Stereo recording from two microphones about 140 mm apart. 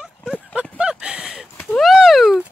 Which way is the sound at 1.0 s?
5° right (ahead or behind).